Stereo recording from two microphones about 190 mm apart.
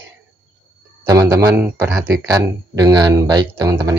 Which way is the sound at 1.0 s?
20° right (ahead or behind).